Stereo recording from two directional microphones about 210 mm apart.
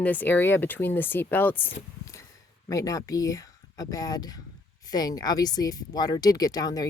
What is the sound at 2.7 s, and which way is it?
Speech, 15° left (ahead or behind).